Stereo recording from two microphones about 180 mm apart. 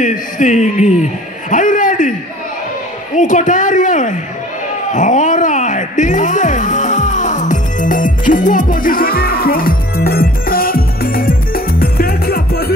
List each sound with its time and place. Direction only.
0.0 s speech: 45° left (ahead or behind)
1.5 s a sound: 45° left (ahead or behind)
3.2 s speech: 45° left (ahead or behind)
4.9 s music: 45° left (ahead or behind)